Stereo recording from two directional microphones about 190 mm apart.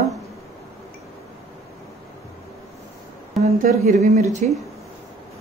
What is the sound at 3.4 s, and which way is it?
Speech, 40° right (ahead or behind).